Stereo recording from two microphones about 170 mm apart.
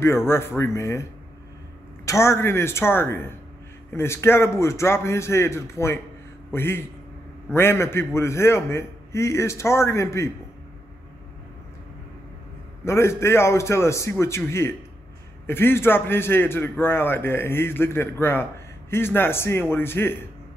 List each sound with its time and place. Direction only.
0.3 s a man's voice: 15° left (ahead or behind)
2.0 s a man's voice: 15° left (ahead or behind)
12.8 s a man's voice: 15° left (ahead or behind)